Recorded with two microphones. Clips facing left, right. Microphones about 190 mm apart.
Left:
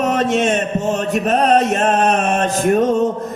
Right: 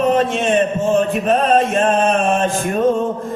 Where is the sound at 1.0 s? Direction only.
40° left (ahead or behind).